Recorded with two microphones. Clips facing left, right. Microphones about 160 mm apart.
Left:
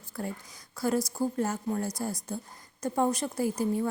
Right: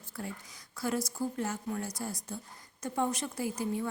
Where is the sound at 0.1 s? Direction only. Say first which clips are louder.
Left 5 dB; 45° left (ahead or behind).